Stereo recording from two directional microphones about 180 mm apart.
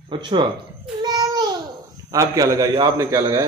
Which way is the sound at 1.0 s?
25° right (ahead or behind).